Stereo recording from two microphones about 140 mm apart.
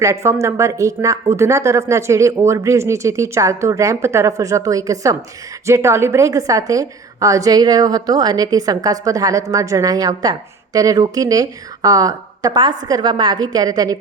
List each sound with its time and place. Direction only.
0.0 s a woman's voice: 20° right (ahead or behind)